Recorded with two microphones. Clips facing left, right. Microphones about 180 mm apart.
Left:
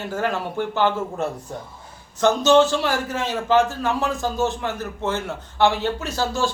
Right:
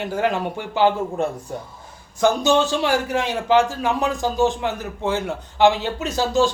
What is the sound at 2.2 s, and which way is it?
A man's voice, 15° right (ahead or behind).